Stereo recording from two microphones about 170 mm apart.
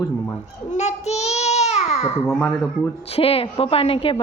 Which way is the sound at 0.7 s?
40° left (ahead or behind).